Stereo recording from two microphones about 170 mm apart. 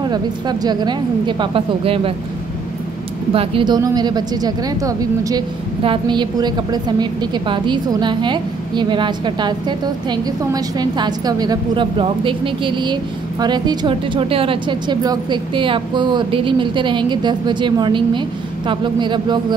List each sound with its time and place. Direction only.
0.0 s a woman's voice: 25° right (ahead or behind)
3.3 s a woman's voice: 30° right (ahead or behind)